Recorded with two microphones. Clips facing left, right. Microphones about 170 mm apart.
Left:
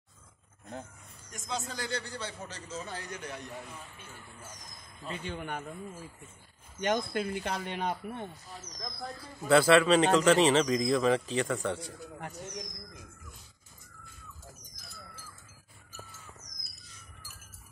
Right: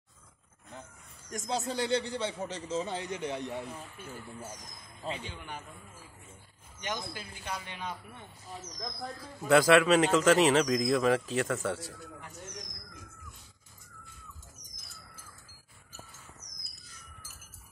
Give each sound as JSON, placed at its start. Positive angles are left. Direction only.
{"t": 1.3, "sound": "a man's voice", "side_deg": -35}
{"t": 5.3, "sound": "speech", "side_deg": 55}
{"t": 6.8, "sound": "speech", "side_deg": 55}
{"t": 9.4, "sound": "speech", "side_deg": -10}